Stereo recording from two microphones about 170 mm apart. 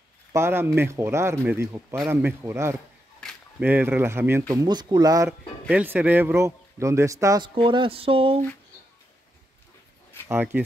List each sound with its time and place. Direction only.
0.3 s a man's voice: 15° right (ahead or behind)
3.2 s a sound: 5° left (ahead or behind)
3.6 s a man's voice: 10° right (ahead or behind)
5.7 s a man's voice: 10° right (ahead or behind); by 8.4 s 30° right (ahead or behind)
10.2 s a man's voice: 10° right (ahead or behind)